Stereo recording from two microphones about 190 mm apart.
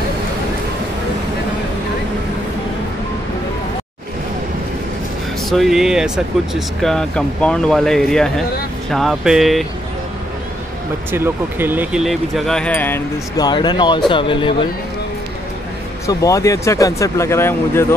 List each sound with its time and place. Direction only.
5.5 s speech: centre (ahead or behind)
11.1 s speech: 10° right (ahead or behind); by 13.0 s 10° left (ahead or behind)
13.4 s speech: 25° left (ahead or behind)
16.1 s speech: 15° left (ahead or behind)